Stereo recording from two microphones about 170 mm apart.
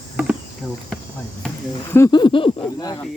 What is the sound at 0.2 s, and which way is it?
Speech, 10° right (ahead or behind).